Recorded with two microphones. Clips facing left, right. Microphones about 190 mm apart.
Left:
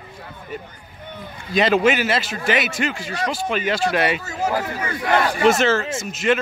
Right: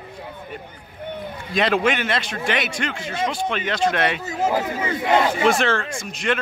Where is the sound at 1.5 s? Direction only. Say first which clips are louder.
Left 3 dB; centre (ahead or behind).